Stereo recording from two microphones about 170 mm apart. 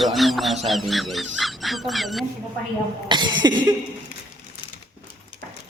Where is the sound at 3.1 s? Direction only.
25° right (ahead or behind).